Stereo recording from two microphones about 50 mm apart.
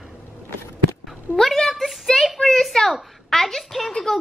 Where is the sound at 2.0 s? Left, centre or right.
Centre.